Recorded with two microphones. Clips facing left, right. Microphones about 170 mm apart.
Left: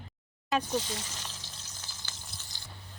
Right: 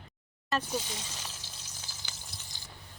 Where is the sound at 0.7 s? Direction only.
10° right (ahead or behind).